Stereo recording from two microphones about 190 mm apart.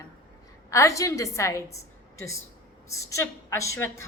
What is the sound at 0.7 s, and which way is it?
A woman's voice, 15° left (ahead or behind).